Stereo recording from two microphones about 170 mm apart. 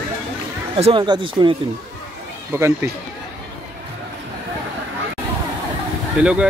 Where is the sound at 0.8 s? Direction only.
30° right (ahead or behind).